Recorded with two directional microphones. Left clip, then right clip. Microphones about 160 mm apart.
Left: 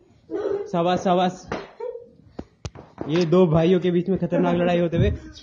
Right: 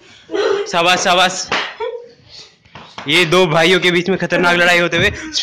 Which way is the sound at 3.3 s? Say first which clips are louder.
Right 3 dB; 30° right (ahead or behind).